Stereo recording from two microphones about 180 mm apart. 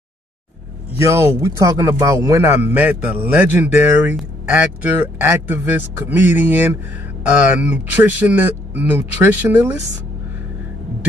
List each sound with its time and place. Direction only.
0.9 s speech: 15° right (ahead or behind)